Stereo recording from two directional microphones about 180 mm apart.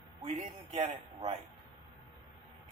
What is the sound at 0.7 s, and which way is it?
Speech, 35° right (ahead or behind).